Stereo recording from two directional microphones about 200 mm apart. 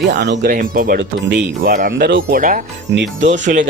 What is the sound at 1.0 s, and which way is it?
Speech, 60° right (ahead or behind).